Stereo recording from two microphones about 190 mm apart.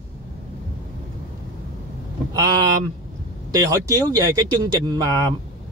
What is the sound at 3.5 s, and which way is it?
Speech, 20° right (ahead or behind).